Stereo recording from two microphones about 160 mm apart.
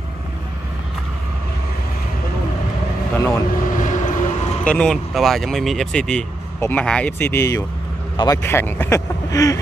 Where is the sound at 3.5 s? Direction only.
55° left (ahead or behind).